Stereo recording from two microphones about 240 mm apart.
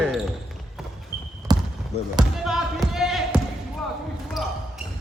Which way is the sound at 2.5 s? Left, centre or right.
Centre.